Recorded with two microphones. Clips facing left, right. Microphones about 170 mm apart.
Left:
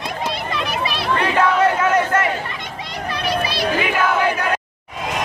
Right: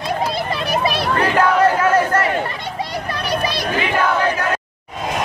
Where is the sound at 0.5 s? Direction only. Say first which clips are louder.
Right 4 dB; 40° right (ahead or behind).